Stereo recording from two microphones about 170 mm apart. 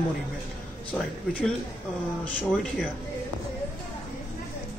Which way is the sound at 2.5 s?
Centre (ahead or behind).